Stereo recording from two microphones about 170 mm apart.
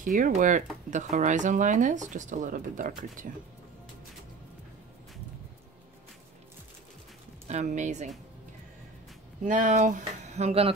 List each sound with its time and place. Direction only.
0.0 s speech: 50° right (ahead or behind)
7.4 s speech: 45° right (ahead or behind)
9.4 s speech: 50° right (ahead or behind)